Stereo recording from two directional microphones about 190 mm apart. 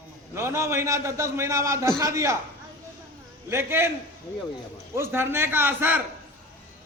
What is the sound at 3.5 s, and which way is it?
Speech, 15° right (ahead or behind).